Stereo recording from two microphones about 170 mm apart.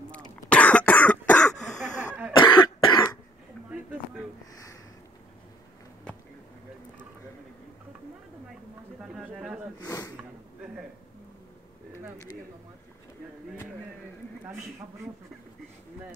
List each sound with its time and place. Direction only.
0.1 s cough: 5° left (ahead or behind)
1.9 s cough: 45° left (ahead or behind)
2.3 s cough: 25° left (ahead or behind)
9.0 s a sound: 5° right (ahead or behind)
9.8 s snort: 20° left (ahead or behind)